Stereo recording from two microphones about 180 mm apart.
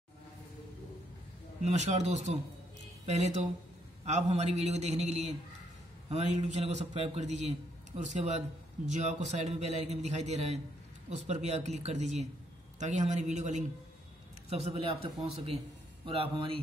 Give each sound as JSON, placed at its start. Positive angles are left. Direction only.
{"t": 1.6, "sound": "a man's voice", "side_deg": -40}